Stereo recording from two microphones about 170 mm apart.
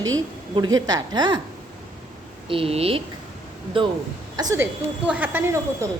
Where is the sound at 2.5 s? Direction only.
35° right (ahead or behind).